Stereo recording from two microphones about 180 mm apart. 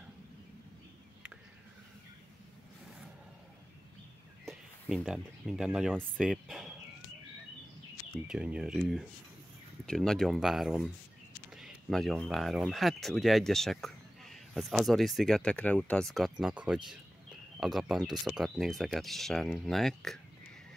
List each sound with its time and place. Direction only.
4.5 s speech: centre (ahead or behind)
8.3 s speech: 5° right (ahead or behind)